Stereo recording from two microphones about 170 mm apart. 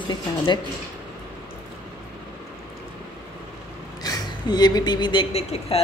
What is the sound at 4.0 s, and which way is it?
Speech, 25° left (ahead or behind).